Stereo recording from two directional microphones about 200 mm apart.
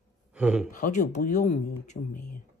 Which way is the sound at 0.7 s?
40° left (ahead or behind).